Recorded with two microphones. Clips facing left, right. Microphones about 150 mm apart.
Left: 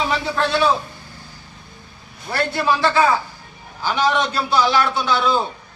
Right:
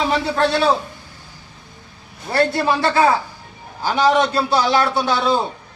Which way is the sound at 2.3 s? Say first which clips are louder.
Right 3 dB; 35° right (ahead or behind).